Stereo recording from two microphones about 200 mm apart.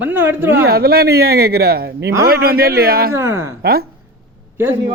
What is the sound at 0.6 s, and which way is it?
Speech, 50° right (ahead or behind).